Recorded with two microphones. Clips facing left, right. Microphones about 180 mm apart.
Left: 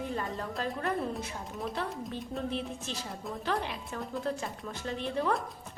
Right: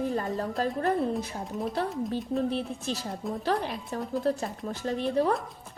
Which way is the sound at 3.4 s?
40° right (ahead or behind).